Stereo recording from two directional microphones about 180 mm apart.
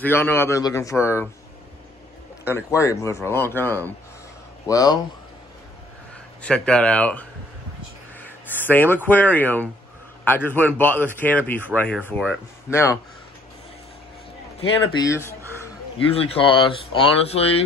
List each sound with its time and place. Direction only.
0.0 s speech: 10° left (ahead or behind)
2.4 s speech: 15° left (ahead or behind)
6.4 s speech: 5° left (ahead or behind)
12.2 s speech: centre (ahead or behind)
14.6 s speech: 20° left (ahead or behind)
16.1 s speech: 35° left (ahead or behind)